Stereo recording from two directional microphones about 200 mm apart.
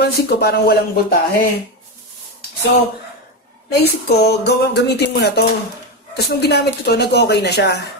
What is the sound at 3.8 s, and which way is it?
Speech, 55° left (ahead or behind).